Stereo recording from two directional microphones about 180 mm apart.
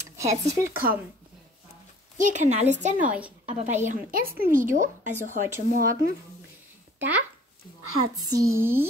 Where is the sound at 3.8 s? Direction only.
50° right (ahead or behind).